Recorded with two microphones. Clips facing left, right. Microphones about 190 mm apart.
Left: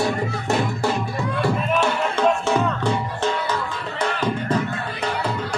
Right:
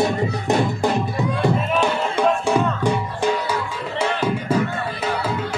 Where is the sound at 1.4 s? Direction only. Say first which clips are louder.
Right 1 dB; 15° right (ahead or behind).